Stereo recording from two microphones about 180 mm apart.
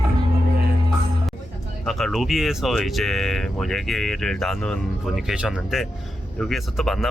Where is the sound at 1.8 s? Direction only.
Centre (ahead or behind).